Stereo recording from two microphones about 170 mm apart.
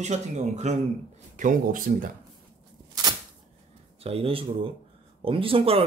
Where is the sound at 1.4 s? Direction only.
55° right (ahead or behind).